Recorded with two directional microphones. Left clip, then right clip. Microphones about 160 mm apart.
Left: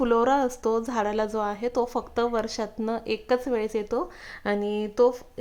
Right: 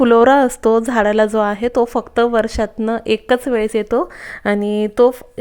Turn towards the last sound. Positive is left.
turn(degrees=-40)  # may be behind; listen again after turning